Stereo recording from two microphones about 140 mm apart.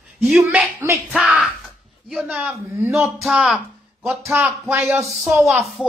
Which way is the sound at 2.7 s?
15° right (ahead or behind).